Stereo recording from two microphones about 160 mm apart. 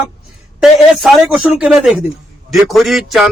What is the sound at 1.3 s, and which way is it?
Speech, 5° right (ahead or behind).